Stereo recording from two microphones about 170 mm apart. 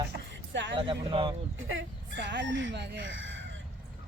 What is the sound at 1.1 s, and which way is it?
Speech, 30° right (ahead or behind).